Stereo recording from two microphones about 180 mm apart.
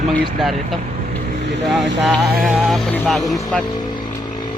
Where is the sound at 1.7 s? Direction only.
Centre (ahead or behind).